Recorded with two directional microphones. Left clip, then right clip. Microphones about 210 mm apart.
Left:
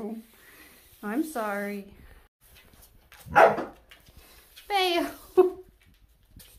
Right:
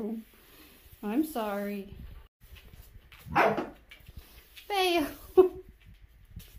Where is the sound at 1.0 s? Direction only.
Centre (ahead or behind).